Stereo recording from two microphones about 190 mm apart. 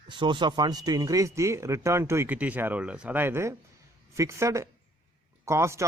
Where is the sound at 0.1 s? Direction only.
25° right (ahead or behind).